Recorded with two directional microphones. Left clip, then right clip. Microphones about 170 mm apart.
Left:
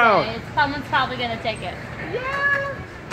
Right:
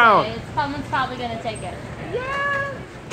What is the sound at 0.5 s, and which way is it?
A woman's voice, 40° left (ahead or behind).